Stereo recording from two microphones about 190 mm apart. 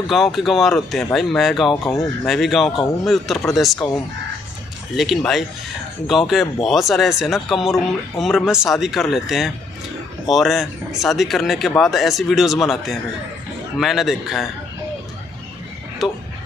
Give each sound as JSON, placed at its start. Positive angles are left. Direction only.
{"t": 0.1, "sound": "speech", "side_deg": 0}
{"t": 1.7, "sound": "speech", "side_deg": 15}
{"t": 2.2, "sound": "speech", "side_deg": 0}
{"t": 4.9, "sound": "speech", "side_deg": 0}